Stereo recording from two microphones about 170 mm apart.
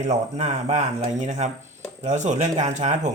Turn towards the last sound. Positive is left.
turn(degrees=-45)  # may be behind; listen again after turning